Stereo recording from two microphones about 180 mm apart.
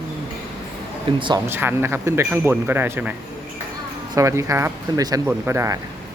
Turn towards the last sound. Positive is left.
turn(degrees=-15)  # may be behind; listen again after turning